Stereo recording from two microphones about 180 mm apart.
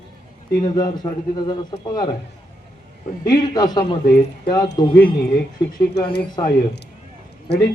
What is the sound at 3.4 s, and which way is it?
Speech, 20° left (ahead or behind).